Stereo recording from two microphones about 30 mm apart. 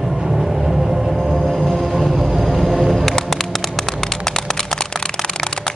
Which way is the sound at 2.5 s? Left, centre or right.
Centre.